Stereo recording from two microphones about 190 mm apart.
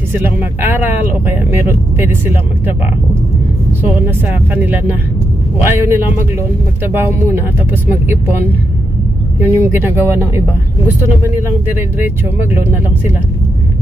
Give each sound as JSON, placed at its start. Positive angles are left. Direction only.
{"t": 0.1, "sound": "speech", "side_deg": -10}
{"t": 4.1, "sound": "speech", "side_deg": -10}
{"t": 9.4, "sound": "speech", "side_deg": -10}